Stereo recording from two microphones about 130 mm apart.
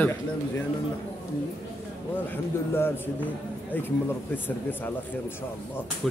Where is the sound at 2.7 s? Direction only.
15° left (ahead or behind).